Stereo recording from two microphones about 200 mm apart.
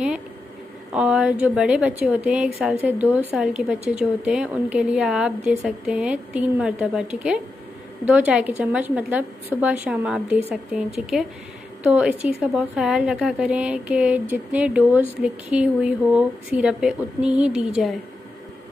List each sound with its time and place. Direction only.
0.9 s a woman's voice: 5° right (ahead or behind)